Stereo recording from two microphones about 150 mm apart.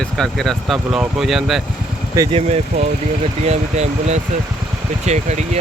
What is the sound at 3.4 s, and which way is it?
Speech, 45° right (ahead or behind).